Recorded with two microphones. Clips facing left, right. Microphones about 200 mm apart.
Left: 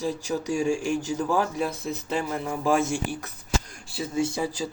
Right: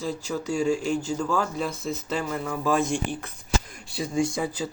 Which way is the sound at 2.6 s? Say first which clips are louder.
Left 1 dB; 10° left (ahead or behind).